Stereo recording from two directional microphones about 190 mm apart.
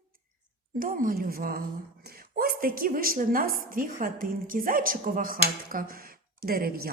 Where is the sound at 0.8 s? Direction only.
45° right (ahead or behind).